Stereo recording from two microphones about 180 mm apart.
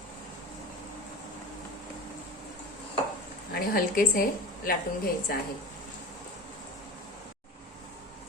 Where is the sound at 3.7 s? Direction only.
55° left (ahead or behind).